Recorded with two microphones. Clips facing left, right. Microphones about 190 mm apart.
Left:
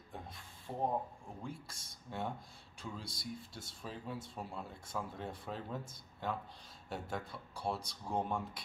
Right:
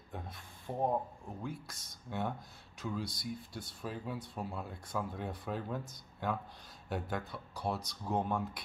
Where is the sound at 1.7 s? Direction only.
30° left (ahead or behind).